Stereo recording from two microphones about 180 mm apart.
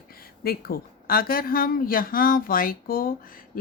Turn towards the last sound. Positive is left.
turn(degrees=55)  # may be behind; listen again after turning